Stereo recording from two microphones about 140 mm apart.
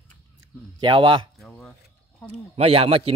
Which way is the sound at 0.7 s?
35° right (ahead or behind).